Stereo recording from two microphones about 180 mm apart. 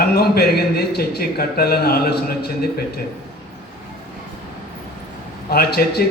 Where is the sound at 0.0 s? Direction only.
60° left (ahead or behind).